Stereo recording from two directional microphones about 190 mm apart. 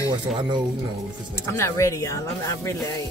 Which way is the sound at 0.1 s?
25° right (ahead or behind).